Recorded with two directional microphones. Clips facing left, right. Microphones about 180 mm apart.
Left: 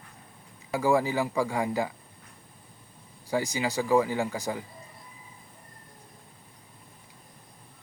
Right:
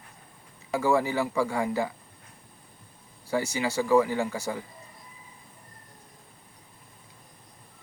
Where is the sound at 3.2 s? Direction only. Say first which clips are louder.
Even; 15° left (ahead or behind).